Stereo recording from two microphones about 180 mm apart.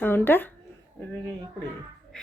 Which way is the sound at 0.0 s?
10° left (ahead or behind).